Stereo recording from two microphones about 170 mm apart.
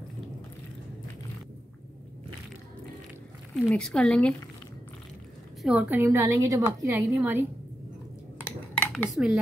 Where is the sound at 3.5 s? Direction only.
5° left (ahead or behind).